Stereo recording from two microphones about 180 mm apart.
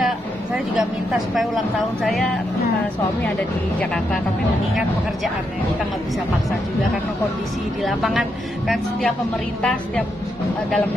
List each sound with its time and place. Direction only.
0.0 s speech: 5° right (ahead or behind)
7.8 s speech: centre (ahead or behind)